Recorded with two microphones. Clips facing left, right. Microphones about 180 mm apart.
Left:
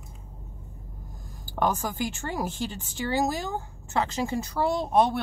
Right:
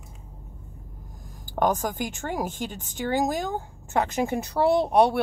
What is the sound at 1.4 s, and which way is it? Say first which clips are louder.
Speech: right 3 dB; 20° right (ahead or behind).